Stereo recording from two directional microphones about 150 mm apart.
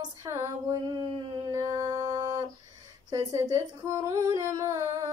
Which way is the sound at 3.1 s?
20° right (ahead or behind).